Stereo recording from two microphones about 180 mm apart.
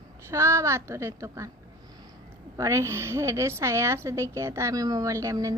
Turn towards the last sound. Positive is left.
turn(degrees=-20)  # may be behind; listen again after turning